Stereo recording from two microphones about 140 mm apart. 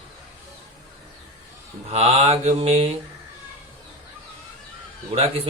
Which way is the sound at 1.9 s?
45° right (ahead or behind).